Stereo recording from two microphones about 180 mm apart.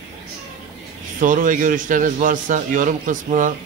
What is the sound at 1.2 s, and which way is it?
A man's voice, 45° right (ahead or behind).